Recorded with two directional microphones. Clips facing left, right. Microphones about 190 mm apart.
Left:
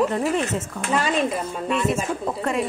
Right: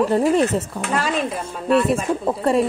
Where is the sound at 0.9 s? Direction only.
Centre (ahead or behind).